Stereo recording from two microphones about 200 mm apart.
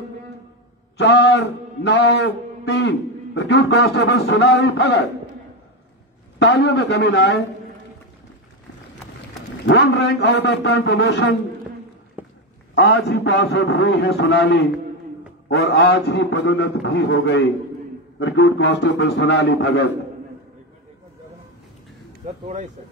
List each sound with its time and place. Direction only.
0.9 s a man's voice: 60° left (ahead or behind)
6.4 s a man's voice: 60° left (ahead or behind)
9.7 s a man's voice: 55° left (ahead or behind)
12.2 s dog: 10° right (ahead or behind)
12.7 s a man's voice: 55° left (ahead or behind)